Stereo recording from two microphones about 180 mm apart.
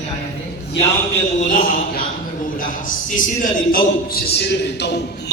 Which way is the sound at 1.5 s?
50° left (ahead or behind).